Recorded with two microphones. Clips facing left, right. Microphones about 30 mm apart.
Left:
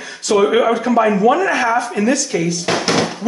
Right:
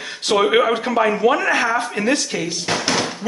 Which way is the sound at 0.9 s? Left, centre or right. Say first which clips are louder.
Left 3 dB; centre.